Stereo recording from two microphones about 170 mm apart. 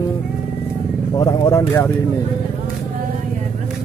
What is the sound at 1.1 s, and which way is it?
Speech, 20° left (ahead or behind).